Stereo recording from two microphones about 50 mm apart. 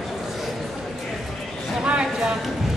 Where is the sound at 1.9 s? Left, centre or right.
Right.